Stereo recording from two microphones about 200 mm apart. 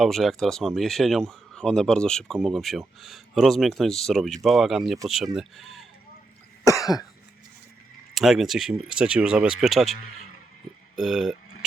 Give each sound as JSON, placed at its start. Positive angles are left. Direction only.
{"t": 0.0, "sound": "speech", "side_deg": 0}
{"t": 6.7, "sound": "cough", "side_deg": 15}
{"t": 8.1, "sound": "speech", "side_deg": 0}